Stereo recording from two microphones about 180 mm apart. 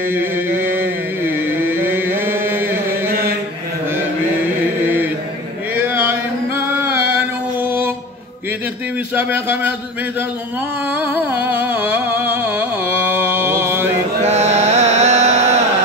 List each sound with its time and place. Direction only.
0.1 s chant: 10° right (ahead or behind)
4.8 s mantra: 10° right (ahead or behind)
5.8 s a sound: 10° right (ahead or behind)
7.6 s music: 10° right (ahead or behind)
9.1 s speech: 10° right (ahead or behind)
10.9 s music: 10° right (ahead or behind)
14.2 s music: 40° right (ahead or behind)